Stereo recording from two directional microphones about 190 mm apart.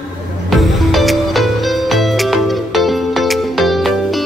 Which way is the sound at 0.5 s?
Centre (ahead or behind).